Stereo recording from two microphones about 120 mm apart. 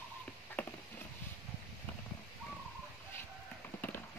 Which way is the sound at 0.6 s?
10° left (ahead or behind).